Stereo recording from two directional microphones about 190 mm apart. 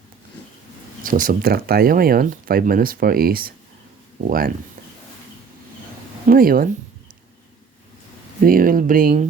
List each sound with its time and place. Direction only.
1.0 s speech: 45° right (ahead or behind)
6.2 s speech: 50° right (ahead or behind)
8.4 s speech: 45° right (ahead or behind)